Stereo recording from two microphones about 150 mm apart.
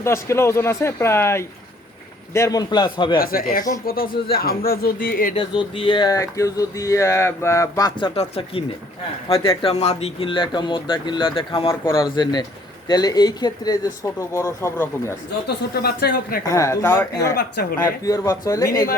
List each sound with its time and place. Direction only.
0.0 s speech: 20° left (ahead or behind)
3.2 s speech: 75° left (ahead or behind)
5.3 s speech: 35° left (ahead or behind)
11.7 s speech: 20° left (ahead or behind)
12.0 s speech: 30° left (ahead or behind)
15.4 s speech: 90° left
16.5 s speech: 20° left (ahead or behind)
17.3 s speech: 80° left
17.8 s speech: 20° left (ahead or behind)